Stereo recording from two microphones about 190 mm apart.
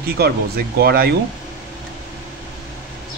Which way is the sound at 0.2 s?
55° right (ahead or behind).